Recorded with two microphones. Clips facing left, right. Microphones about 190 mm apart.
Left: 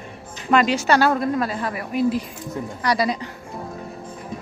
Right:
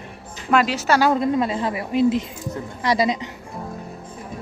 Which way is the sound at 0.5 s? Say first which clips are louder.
Left 1 dB; 5° right (ahead or behind).